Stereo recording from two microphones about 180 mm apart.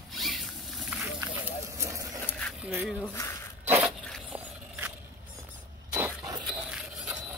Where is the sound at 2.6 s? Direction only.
5° right (ahead or behind).